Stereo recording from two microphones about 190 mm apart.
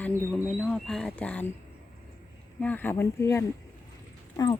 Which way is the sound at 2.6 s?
10° left (ahead or behind).